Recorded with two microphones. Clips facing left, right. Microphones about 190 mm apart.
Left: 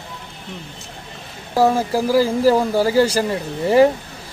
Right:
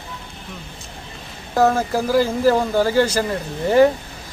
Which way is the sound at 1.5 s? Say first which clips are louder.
Left 1 dB; 10° left (ahead or behind).